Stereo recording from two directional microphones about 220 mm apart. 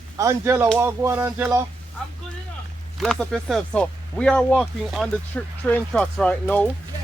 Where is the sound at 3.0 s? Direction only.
Centre (ahead or behind).